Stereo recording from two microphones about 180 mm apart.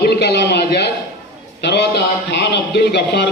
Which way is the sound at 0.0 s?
65° left (ahead or behind).